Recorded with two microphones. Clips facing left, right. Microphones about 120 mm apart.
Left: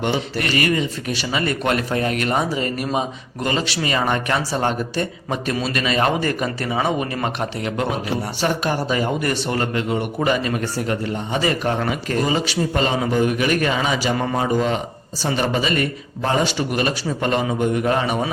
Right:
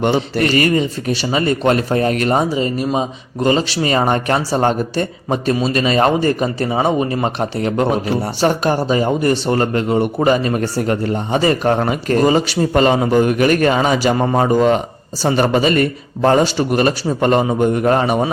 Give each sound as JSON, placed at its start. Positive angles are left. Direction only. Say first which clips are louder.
{"t": 0.0, "sound": "speech", "louder": "right 6 dB", "side_deg": -40}
{"t": 2.5, "sound": "a man's voice", "louder": "right 5 dB", "side_deg": -25}